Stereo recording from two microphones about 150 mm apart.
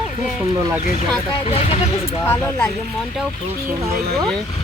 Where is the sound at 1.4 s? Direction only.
40° left (ahead or behind).